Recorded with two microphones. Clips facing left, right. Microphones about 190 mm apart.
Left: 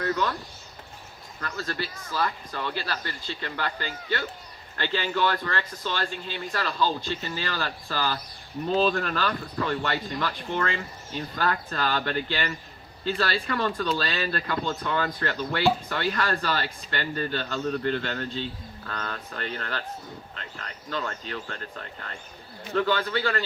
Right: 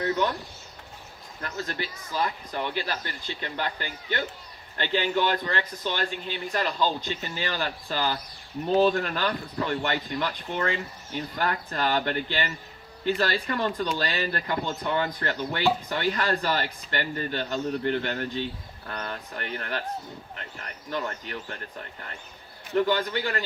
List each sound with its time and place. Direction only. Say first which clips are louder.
0.0 s speech: right 1 dB; 20° right (ahead or behind)
1.4 s speech: left 1 dB; 20° right (ahead or behind)